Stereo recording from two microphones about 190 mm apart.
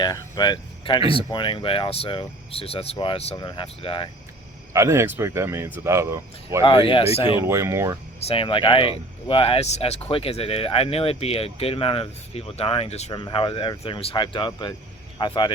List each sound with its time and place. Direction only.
0.0 s speech: 20° left (ahead or behind)
4.7 s speech: 15° right (ahead or behind)
6.6 s speech: 25° left (ahead or behind)
7.4 s speech: 15° right (ahead or behind)
8.3 s speech: 30° left (ahead or behind)